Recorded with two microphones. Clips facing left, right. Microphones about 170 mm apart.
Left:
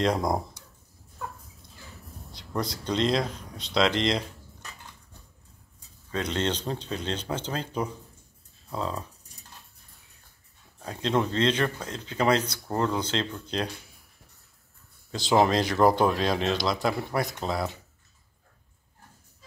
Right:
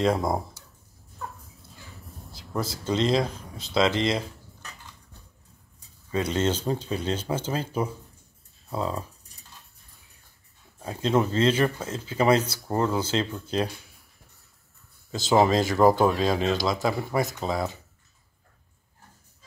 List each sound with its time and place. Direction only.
0.0 s speech: 5° right (ahead or behind)
2.3 s speech: 5° right (ahead or behind)
6.1 s speech: 10° right (ahead or behind)
10.8 s speech: 5° right (ahead or behind)
15.0 s speech: centre (ahead or behind)